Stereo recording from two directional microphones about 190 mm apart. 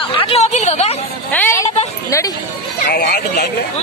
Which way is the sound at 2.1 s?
20° left (ahead or behind).